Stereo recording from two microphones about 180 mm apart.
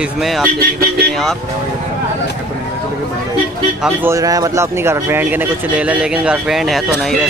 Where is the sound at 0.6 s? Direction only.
55° right (ahead or behind).